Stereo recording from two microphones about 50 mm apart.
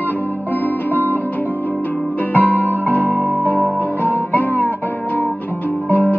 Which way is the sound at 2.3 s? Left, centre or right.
Left.